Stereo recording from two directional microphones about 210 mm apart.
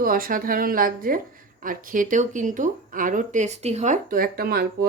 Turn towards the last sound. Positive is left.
turn(degrees=-45)  # may be behind; listen again after turning